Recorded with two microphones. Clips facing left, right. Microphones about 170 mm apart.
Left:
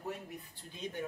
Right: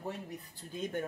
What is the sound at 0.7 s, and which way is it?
Speech, 45° right (ahead or behind).